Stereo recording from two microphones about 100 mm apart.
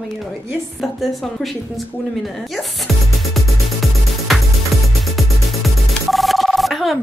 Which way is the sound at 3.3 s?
Centre (ahead or behind).